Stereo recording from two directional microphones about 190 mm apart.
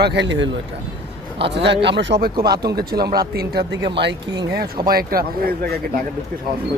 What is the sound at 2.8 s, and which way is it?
Speech, 55° right (ahead or behind).